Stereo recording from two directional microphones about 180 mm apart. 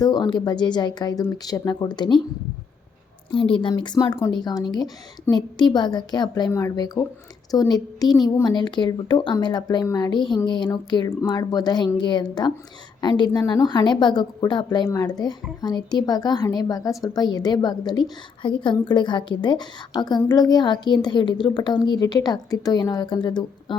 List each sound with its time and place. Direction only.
0.0 s a woman's voice: 20° left (ahead or behind)
3.3 s a woman's voice: 30° left (ahead or behind)